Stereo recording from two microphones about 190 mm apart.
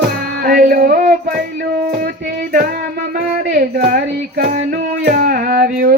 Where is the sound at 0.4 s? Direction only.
50° right (ahead or behind).